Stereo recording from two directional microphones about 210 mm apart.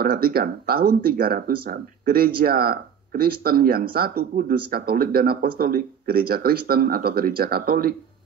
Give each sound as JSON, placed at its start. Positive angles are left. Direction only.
{"t": 0.0, "sound": "speech", "side_deg": -45}